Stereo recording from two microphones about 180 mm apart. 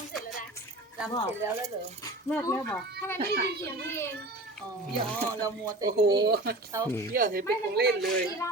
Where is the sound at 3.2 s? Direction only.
60° right (ahead or behind).